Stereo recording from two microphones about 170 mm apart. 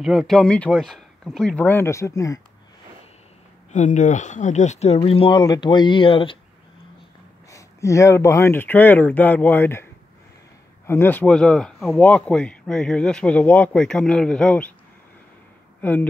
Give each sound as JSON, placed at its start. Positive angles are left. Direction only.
{"t": 0.0, "sound": "speech", "side_deg": 0}
{"t": 3.7, "sound": "speech", "side_deg": 45}
{"t": 7.5, "sound": "speech", "side_deg": 20}
{"t": 10.9, "sound": "speech", "side_deg": 10}
{"t": 15.8, "sound": "speech", "side_deg": 10}